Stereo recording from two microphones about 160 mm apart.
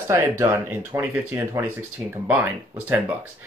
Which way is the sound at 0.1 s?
15° right (ahead or behind).